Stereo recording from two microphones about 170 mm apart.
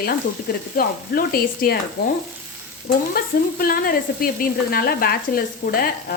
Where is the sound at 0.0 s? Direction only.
60° left (ahead or behind).